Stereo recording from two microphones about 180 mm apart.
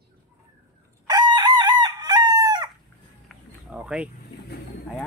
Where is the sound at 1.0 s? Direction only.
25° right (ahead or behind).